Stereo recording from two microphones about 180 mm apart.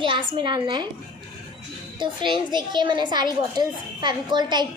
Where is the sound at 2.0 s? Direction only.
25° right (ahead or behind).